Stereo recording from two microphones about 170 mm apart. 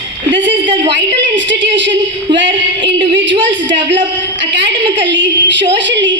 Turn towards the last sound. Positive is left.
turn(degrees=-90)